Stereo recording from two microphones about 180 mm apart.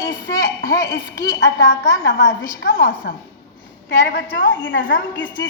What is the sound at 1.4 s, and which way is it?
Speech, 75° left (ahead or behind).